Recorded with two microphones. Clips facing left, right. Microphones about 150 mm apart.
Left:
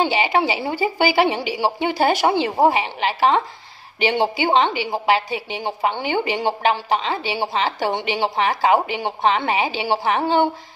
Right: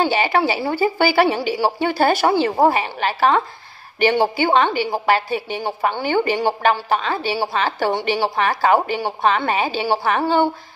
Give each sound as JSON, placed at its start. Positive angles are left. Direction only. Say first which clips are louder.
{"t": 0.0, "sound": "a woman's voice", "louder": "right 1 dB", "side_deg": 15}